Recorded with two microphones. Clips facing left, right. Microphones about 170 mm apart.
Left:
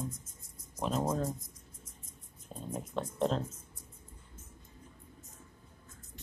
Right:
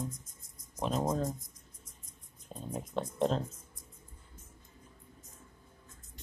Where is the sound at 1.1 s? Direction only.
5° left (ahead or behind).